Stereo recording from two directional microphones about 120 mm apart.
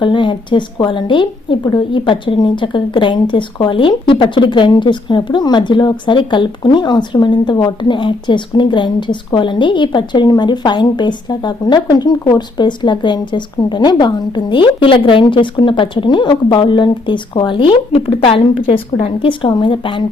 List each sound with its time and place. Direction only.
0.0 s a woman's voice: 40° left (ahead or behind)